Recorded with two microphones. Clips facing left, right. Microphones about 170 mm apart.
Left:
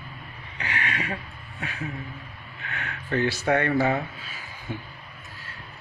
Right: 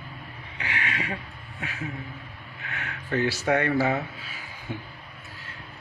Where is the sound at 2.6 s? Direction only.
10° right (ahead or behind).